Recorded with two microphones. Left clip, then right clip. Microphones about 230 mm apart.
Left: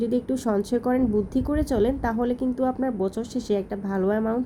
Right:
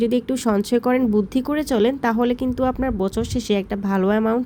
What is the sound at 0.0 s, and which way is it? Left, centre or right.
Speech, right.